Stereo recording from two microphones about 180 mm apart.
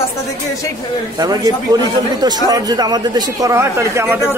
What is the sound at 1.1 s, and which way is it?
A man's voice, 20° right (ahead or behind).